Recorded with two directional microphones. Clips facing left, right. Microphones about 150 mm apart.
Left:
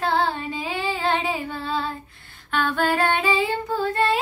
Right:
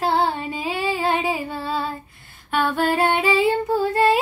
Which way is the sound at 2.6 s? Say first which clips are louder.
Right 2 dB; 20° right (ahead or behind).